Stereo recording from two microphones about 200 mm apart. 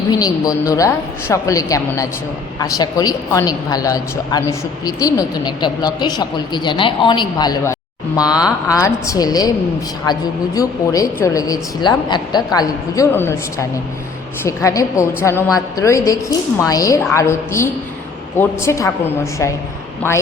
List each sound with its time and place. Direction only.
0.1 s a woman's voice: 20° left (ahead or behind)